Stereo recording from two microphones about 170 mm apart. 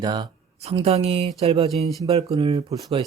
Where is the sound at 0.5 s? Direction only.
35° right (ahead or behind).